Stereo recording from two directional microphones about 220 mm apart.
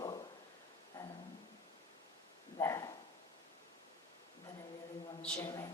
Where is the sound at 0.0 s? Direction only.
15° left (ahead or behind).